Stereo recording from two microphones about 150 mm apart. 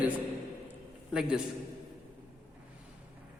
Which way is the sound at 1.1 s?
5° right (ahead or behind).